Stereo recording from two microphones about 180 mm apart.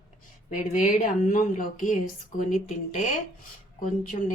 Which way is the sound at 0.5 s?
40° left (ahead or behind).